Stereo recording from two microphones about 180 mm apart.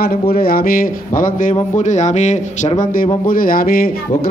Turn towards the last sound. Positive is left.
turn(degrees=50)  # may be behind; listen again after turning